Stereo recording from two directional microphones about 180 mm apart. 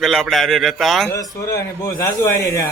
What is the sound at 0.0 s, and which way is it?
Speech, centre (ahead or behind).